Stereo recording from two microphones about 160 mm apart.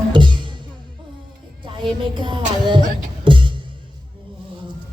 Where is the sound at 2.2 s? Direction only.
30° right (ahead or behind).